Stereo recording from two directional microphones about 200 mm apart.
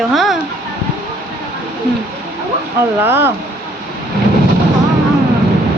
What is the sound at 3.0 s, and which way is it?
Speech, 10° right (ahead or behind).